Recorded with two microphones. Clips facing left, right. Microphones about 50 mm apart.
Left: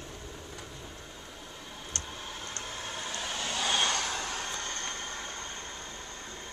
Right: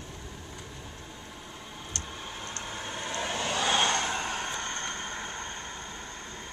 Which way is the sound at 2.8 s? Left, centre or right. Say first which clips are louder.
Right 4 dB; right.